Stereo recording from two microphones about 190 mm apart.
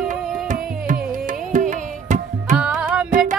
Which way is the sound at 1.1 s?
45° right (ahead or behind).